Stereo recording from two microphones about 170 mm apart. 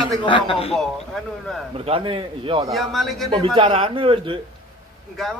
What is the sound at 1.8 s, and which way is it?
Speech, 35° right (ahead or behind).